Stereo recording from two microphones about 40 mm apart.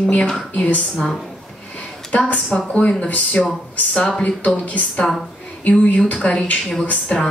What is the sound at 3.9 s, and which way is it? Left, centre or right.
Speech, left.